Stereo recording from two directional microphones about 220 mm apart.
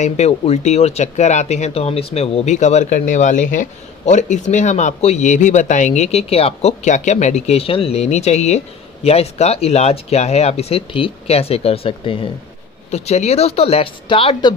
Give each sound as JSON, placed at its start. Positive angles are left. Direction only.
{"t": 0.0, "sound": "speech", "side_deg": 30}